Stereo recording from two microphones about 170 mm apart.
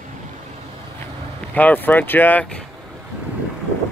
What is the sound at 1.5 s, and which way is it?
Speech, 10° left (ahead or behind).